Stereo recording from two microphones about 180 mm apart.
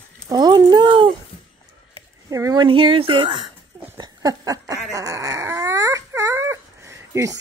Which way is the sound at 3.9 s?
20° right (ahead or behind).